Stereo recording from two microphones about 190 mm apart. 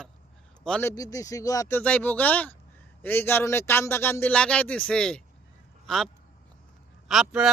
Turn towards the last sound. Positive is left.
turn(degrees=-5)  # may be behind; listen again after turning